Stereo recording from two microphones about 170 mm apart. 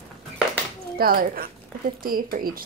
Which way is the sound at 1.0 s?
60° right (ahead or behind).